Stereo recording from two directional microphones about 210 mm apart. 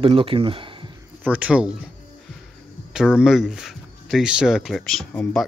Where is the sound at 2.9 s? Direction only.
5° right (ahead or behind).